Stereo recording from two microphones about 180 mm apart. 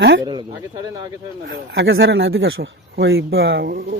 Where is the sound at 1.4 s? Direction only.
70° right (ahead or behind).